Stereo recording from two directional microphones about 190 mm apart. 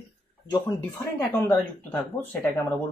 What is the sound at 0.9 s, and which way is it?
Speech, 10° left (ahead or behind).